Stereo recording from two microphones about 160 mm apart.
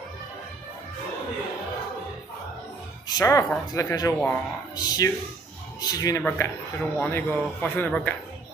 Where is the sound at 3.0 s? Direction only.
20° left (ahead or behind).